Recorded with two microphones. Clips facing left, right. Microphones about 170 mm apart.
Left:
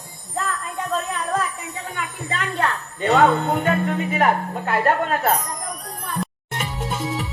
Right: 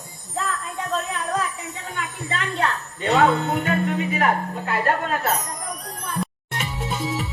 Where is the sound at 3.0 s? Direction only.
55° left (ahead or behind).